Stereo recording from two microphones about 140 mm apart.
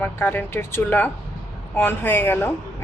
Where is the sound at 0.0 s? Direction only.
15° left (ahead or behind).